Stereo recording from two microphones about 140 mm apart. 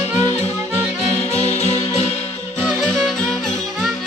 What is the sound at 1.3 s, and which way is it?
Music, 50° left (ahead or behind).